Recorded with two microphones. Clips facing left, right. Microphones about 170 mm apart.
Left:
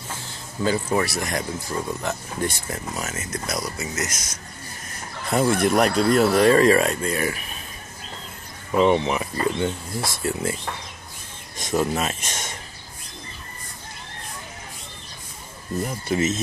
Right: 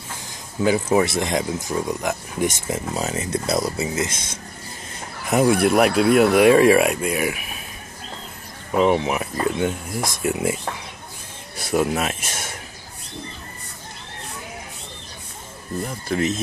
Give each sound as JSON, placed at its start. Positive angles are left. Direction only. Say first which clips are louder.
{"t": 0.3, "sound": "speech", "louder": "right 4 dB", "side_deg": -15}
{"t": 5.2, "sound": "speech", "louder": "right 3 dB", "side_deg": -10}
{"t": 8.7, "sound": "speech", "louder": "even", "side_deg": -5}
{"t": 10.0, "sound": "speech", "louder": "right 3 dB", "side_deg": -15}
{"t": 15.8, "sound": "speech", "louder": "even", "side_deg": 5}